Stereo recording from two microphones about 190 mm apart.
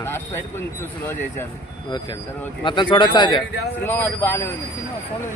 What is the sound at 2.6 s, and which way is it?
Speech, 25° left (ahead or behind).